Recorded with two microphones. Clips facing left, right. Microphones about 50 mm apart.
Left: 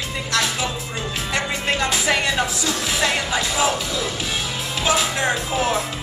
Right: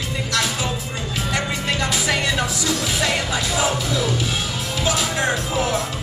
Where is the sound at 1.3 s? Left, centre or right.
Left.